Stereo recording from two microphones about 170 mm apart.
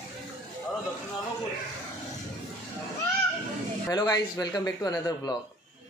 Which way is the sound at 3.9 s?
20° left (ahead or behind).